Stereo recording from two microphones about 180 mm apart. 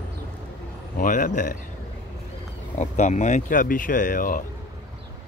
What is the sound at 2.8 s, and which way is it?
Speech, 40° left (ahead or behind).